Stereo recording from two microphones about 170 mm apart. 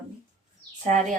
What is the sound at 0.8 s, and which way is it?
Speech, 45° right (ahead or behind).